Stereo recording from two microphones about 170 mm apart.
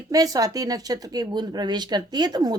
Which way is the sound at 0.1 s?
20° right (ahead or behind).